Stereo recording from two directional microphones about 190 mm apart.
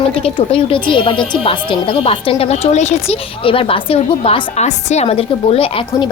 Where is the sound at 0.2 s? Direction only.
30° left (ahead or behind).